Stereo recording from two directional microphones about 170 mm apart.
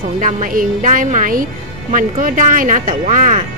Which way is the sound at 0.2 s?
50° right (ahead or behind).